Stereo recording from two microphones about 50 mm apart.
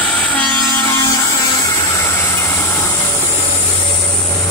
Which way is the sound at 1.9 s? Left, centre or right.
Left.